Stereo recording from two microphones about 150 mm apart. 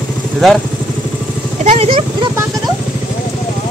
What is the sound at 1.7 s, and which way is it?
Speech, 40° right (ahead or behind).